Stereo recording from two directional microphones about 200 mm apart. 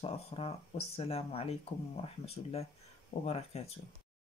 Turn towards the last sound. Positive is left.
turn(degrees=30)  # may be behind; listen again after turning